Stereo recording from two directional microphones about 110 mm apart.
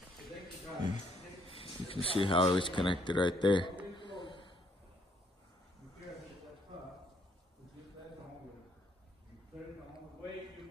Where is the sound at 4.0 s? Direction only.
45° left (ahead or behind).